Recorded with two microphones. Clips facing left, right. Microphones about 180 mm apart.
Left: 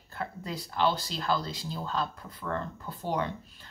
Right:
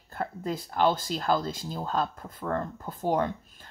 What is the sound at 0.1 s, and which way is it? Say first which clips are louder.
Speech: right 5 dB; 50° right (ahead or behind).